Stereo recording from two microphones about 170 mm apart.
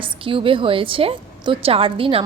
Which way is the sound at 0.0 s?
30° right (ahead or behind).